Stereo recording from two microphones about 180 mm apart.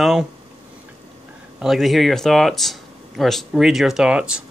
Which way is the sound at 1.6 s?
Centre (ahead or behind).